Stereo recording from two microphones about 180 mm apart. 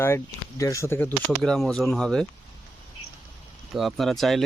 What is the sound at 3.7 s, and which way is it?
Speech, centre (ahead or behind).